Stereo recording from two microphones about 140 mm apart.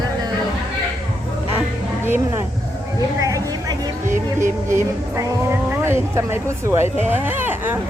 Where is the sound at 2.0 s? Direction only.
15° right (ahead or behind).